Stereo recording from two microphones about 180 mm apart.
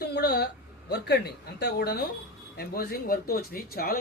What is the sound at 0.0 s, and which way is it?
Speech, 65° left (ahead or behind).